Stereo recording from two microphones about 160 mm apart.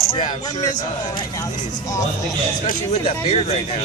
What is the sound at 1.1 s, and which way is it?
Speech, 20° left (ahead or behind).